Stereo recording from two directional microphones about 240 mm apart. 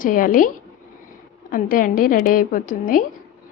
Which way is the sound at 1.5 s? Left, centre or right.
Left.